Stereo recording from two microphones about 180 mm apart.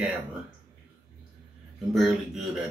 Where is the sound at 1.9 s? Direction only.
Centre (ahead or behind).